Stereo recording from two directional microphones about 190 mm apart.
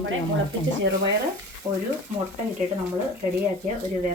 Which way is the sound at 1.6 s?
20° right (ahead or behind).